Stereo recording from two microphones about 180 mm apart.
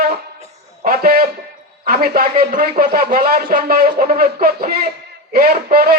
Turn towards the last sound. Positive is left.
turn(degrees=-60)  # may be behind; listen again after turning